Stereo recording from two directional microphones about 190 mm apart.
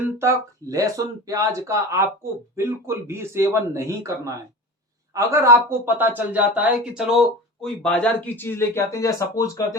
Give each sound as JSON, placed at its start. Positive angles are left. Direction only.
{"t": 0.2, "sound": "speech", "side_deg": -15}